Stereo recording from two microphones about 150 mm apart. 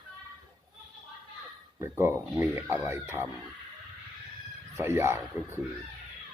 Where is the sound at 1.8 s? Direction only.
15° right (ahead or behind).